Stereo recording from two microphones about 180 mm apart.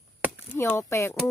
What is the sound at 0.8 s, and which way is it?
Speech, 15° left (ahead or behind).